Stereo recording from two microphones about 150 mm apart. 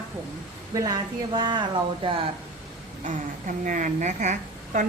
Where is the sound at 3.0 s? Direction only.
60° right (ahead or behind).